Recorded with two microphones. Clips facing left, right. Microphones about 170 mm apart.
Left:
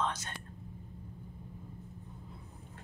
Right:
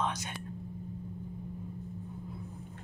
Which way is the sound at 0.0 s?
15° right (ahead or behind).